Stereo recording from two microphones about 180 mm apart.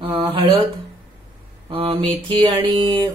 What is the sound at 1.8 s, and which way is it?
Mantra, 30° right (ahead or behind).